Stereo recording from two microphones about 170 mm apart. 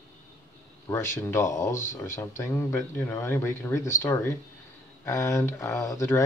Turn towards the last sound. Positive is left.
turn(degrees=15)  # may be behind; listen again after turning